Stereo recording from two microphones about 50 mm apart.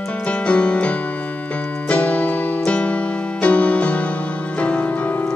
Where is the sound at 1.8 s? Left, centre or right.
Left.